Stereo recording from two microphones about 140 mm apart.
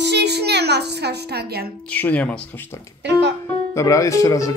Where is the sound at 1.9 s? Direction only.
10° left (ahead or behind).